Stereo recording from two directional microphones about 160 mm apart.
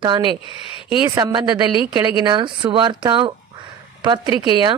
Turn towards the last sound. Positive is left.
turn(degrees=-25)  # may be behind; listen again after turning